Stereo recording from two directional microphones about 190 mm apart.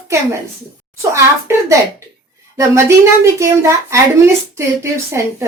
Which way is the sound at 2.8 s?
15° right (ahead or behind).